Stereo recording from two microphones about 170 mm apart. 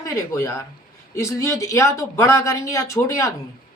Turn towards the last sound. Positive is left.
turn(degrees=20)  # may be behind; listen again after turning